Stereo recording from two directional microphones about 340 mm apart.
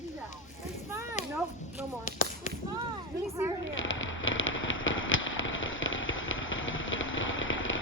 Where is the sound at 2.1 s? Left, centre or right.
Left.